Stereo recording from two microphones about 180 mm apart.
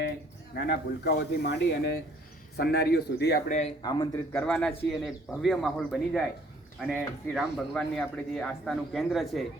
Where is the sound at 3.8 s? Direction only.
20° left (ahead or behind).